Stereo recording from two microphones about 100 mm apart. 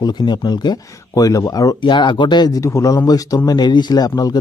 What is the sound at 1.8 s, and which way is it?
Speech, 50° left (ahead or behind).